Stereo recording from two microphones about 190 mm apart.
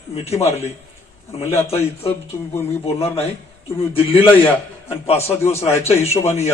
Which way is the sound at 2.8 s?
30° left (ahead or behind).